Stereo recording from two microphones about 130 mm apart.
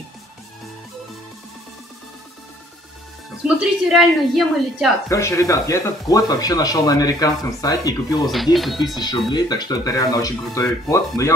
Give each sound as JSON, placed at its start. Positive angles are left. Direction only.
{"t": 3.4, "sound": "a woman's voice", "side_deg": -5}
{"t": 5.1, "sound": "speech", "side_deg": 25}
{"t": 8.5, "sound": "a woman's voice", "side_deg": 0}
{"t": 9.0, "sound": "speech", "side_deg": 30}